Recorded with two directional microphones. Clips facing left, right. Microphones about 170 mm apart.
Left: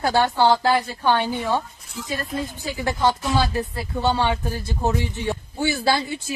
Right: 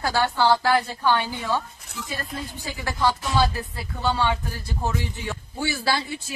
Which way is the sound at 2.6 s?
20° left (ahead or behind).